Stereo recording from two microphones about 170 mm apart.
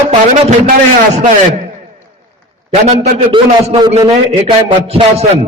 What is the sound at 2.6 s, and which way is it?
A man's voice, 35° right (ahead or behind).